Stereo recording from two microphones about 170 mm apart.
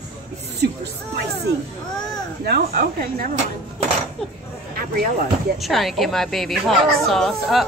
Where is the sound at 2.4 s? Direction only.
70° right (ahead or behind).